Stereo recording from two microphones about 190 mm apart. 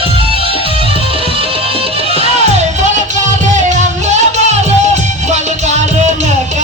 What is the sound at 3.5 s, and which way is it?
Music, 40° right (ahead or behind).